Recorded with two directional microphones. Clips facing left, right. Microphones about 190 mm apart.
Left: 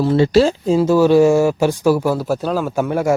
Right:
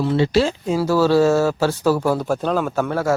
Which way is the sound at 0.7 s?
20° left (ahead or behind).